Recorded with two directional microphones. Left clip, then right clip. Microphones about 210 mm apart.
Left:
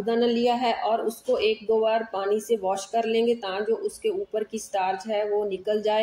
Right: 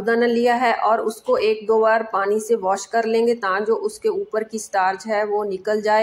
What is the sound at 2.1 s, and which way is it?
Speech, 5° right (ahead or behind).